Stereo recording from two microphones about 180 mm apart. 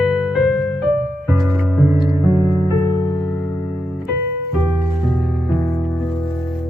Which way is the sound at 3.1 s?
5° left (ahead or behind).